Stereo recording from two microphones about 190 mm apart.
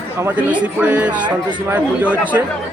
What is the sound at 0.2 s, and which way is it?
Speech, 10° right (ahead or behind).